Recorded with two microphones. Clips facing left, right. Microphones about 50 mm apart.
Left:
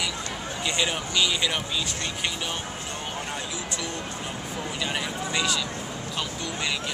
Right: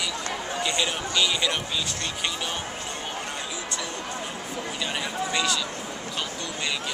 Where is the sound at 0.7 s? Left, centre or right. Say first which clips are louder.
Left 2 dB; centre.